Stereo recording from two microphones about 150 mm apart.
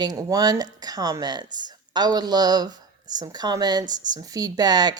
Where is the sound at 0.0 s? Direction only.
25° right (ahead or behind).